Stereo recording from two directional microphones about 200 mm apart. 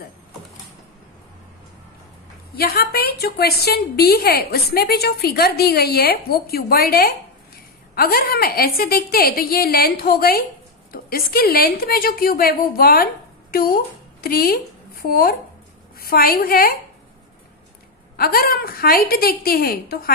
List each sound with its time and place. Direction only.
2.5 s a woman's voice: 50° left (ahead or behind)
18.1 s a woman's voice: 50° left (ahead or behind)